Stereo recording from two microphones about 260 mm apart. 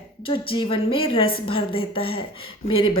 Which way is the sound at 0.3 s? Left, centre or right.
Centre.